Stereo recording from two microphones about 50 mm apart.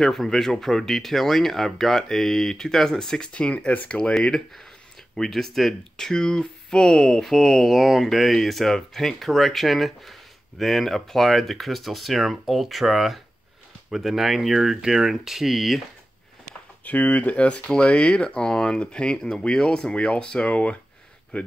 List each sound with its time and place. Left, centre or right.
0.0 s speech: centre
3.3 s speech: left
5.1 s speech: centre
7.6 s speech: centre
16.8 s speech: left
17.7 s speech: centre